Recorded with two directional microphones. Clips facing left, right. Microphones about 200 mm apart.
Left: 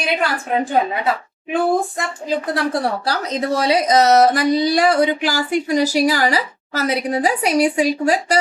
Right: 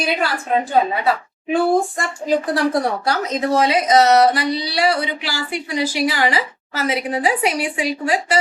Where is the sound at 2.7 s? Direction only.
30° left (ahead or behind).